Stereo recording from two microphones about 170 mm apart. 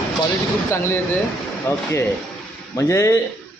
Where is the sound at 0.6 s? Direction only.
15° left (ahead or behind).